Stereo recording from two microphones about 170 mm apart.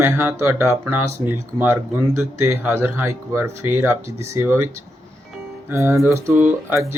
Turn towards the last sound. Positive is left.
turn(degrees=-15)  # may be behind; listen again after turning